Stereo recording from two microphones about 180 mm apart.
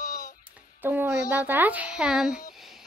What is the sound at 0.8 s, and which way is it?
Music, 10° right (ahead or behind).